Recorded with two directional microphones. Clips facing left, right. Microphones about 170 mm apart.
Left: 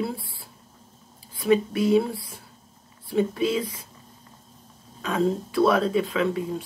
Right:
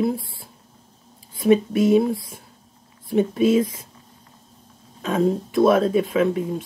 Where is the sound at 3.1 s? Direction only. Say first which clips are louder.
Right 5 dB; 20° right (ahead or behind).